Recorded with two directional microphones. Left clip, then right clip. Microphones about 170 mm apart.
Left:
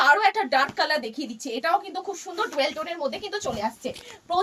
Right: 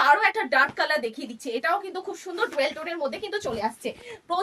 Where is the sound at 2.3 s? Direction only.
20° right (ahead or behind).